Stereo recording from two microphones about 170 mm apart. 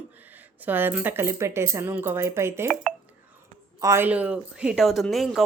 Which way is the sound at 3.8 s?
15° right (ahead or behind).